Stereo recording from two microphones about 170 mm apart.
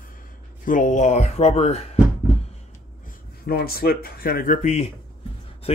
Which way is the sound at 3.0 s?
65° left (ahead or behind).